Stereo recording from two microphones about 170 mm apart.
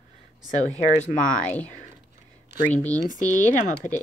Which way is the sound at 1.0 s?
50° left (ahead or behind).